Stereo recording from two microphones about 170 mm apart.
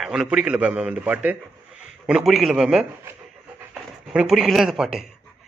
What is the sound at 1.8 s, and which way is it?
A man's voice, 5° right (ahead or behind).